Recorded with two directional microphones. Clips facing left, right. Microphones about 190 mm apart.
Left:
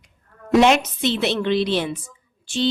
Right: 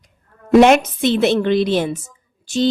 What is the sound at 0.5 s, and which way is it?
A woman's voice, 50° right (ahead or behind).